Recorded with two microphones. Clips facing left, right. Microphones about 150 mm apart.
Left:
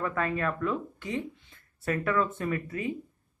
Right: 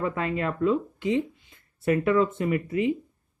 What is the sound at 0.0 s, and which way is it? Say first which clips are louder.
Speech: right 2 dB; 20° right (ahead or behind).